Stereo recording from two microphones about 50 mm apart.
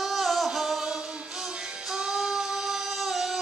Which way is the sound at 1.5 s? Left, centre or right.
Centre.